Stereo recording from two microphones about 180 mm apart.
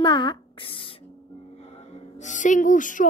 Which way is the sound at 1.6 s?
35° left (ahead or behind).